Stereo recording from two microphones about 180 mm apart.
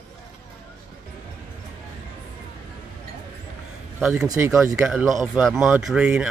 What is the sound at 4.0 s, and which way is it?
Speech, 5° right (ahead or behind).